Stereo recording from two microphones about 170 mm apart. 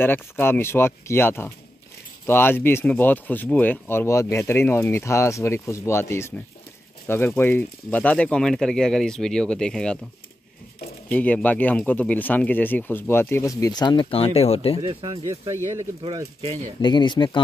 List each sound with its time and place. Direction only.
0.0 s speech: 10° left (ahead or behind)
11.1 s speech: 10° left (ahead or behind); by 14.8 s 35° left (ahead or behind)
14.8 s speech: 30° right (ahead or behind)
16.8 s speech: 25° left (ahead or behind)